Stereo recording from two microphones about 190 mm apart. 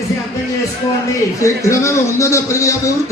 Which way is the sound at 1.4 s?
15° left (ahead or behind).